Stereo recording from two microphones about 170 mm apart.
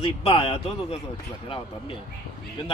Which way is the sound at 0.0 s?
35° left (ahead or behind).